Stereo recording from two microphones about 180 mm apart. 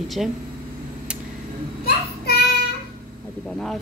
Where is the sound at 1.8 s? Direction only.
60° left (ahead or behind).